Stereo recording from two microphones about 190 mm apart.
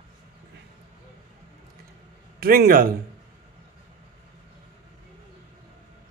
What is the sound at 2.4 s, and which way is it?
Speech, 55° right (ahead or behind).